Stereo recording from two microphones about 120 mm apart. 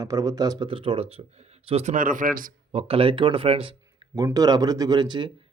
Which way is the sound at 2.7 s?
55° right (ahead or behind).